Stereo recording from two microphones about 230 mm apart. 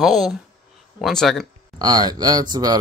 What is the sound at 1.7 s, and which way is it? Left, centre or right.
Speech, centre.